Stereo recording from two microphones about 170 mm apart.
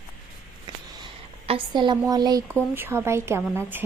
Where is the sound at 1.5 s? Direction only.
30° right (ahead or behind).